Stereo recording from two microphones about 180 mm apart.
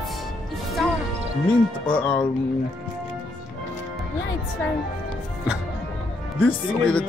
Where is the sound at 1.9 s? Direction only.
5° left (ahead or behind).